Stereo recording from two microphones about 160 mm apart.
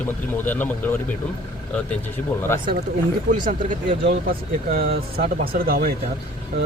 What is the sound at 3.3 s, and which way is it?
Speech, 60° right (ahead or behind).